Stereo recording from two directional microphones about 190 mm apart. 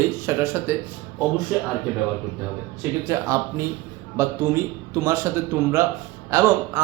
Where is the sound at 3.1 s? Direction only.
15° right (ahead or behind).